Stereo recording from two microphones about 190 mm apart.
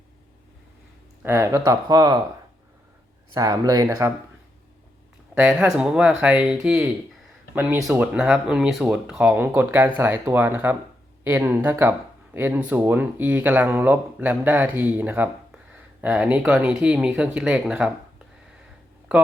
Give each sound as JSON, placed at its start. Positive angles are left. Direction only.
{"t": 1.2, "sound": "speech", "side_deg": -15}
{"t": 3.3, "sound": "speech", "side_deg": -20}
{"t": 5.4, "sound": "speech", "side_deg": -5}